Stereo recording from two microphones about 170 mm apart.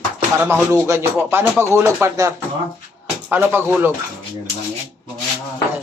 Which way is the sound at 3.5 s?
10° right (ahead or behind).